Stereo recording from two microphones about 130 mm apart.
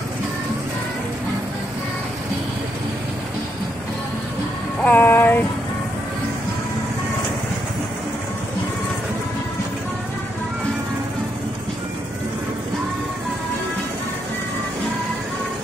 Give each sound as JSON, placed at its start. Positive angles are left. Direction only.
{"t": 4.8, "sound": "music", "side_deg": 15}